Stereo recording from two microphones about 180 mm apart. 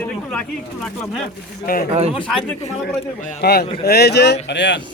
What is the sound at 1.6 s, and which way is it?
Speech, 55° left (ahead or behind).